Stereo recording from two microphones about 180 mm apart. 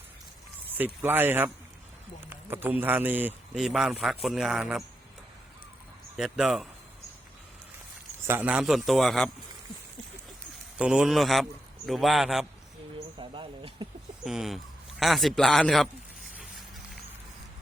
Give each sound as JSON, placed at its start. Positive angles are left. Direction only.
{"t": 0.8, "sound": "a man's voice", "side_deg": -10}
{"t": 6.1, "sound": "a man's voice", "side_deg": -5}
{"t": 8.3, "sound": "a man's voice", "side_deg": -10}
{"t": 10.8, "sound": "a man's voice", "side_deg": -5}
{"t": 13.1, "sound": "a sound", "side_deg": -30}
{"t": 14.3, "sound": "a man's voice", "side_deg": 0}